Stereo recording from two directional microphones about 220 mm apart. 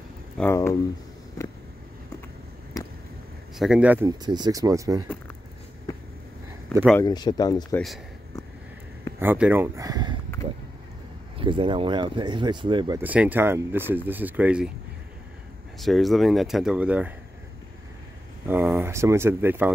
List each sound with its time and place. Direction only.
0.4 s speech: 10° left (ahead or behind)
3.5 s speech: 5° right (ahead or behind)
4.1 s speech: 20° right (ahead or behind)
7.0 s speech: 20° left (ahead or behind)
9.2 s speech: 10° right (ahead or behind)
11.3 s speech: 25° right (ahead or behind)
13.0 s speech: 5° right (ahead or behind)
15.8 s speech: centre (ahead or behind)
18.5 s speech: 10° right (ahead or behind)